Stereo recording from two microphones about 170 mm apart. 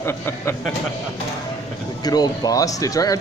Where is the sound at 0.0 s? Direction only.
15° left (ahead or behind).